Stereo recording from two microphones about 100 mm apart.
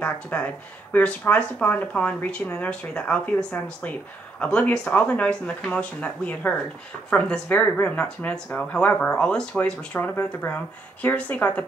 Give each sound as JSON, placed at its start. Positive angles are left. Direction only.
{"t": 0.0, "sound": "speech", "side_deg": 15}